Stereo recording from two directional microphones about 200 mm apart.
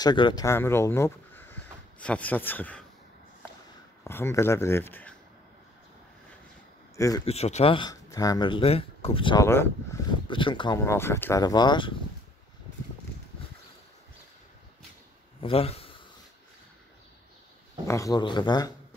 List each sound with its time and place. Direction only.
0.0 s speech: 20° left (ahead or behind)
4.0 s speech: 15° left (ahead or behind)
7.0 s speech: 20° left (ahead or behind)
7.2 s speech: 30° left (ahead or behind); by 9.7 s 15° left (ahead or behind)
10.2 s speech: 25° left (ahead or behind)
15.4 s speech: 30° left (ahead or behind)
17.8 s speech: 15° left (ahead or behind)